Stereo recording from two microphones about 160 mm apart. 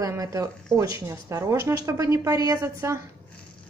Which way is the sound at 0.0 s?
20° right (ahead or behind).